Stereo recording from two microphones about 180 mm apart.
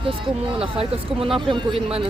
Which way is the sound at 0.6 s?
30° right (ahead or behind).